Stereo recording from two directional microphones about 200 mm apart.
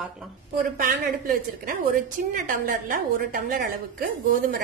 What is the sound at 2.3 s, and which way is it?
A woman's voice, 40° right (ahead or behind).